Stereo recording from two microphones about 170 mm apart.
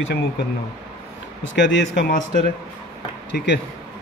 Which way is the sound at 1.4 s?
90° left.